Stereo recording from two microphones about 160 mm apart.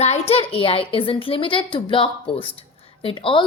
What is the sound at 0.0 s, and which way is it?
A woman's voice, 40° left (ahead or behind).